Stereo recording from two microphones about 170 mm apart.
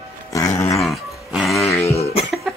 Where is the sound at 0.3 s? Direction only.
20° left (ahead or behind).